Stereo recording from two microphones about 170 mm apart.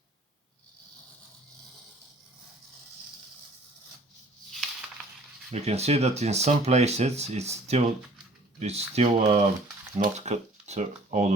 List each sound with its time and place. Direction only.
5.5 s speech: 40° right (ahead or behind)